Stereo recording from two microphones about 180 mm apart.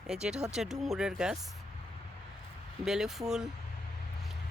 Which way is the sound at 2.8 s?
5° right (ahead or behind).